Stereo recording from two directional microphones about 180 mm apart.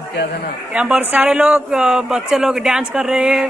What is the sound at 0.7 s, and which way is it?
A man's voice, 5° right (ahead or behind).